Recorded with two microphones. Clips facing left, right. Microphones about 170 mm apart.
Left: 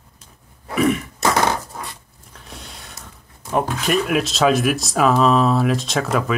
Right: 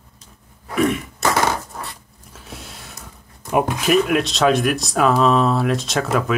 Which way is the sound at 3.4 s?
15° right (ahead or behind).